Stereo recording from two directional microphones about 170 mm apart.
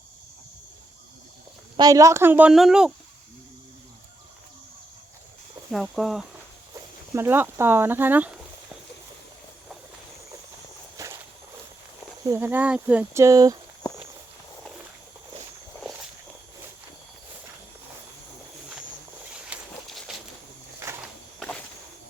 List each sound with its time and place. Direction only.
1.7 s speech: 20° right (ahead or behind); by 2.9 s 5° right (ahead or behind)
5.7 s speech: centre (ahead or behind)
7.1 s speech: 15° right (ahead or behind)
10.9 s walk: 20° right (ahead or behind)
12.2 s speech: 15° right (ahead or behind)
19.3 s walk: 5° right (ahead or behind)
20.7 s a sound: 15° right (ahead or behind)
21.3 s walk: 5° left (ahead or behind)